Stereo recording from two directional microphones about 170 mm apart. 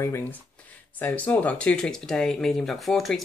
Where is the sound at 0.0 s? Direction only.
15° left (ahead or behind).